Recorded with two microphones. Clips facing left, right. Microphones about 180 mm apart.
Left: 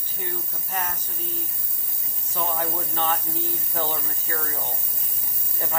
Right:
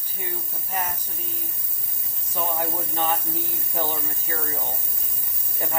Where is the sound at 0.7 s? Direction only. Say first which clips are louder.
Right 1 dB; 10° right (ahead or behind).